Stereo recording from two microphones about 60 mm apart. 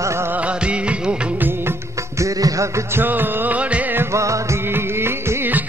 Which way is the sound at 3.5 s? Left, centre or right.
Right.